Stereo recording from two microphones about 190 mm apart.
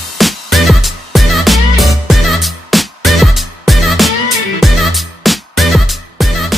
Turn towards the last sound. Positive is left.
turn(degrees=0)  # may be behind; listen again after turning